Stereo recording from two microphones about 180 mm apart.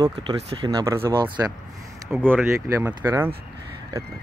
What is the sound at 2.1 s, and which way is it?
Speech, 10° right (ahead or behind).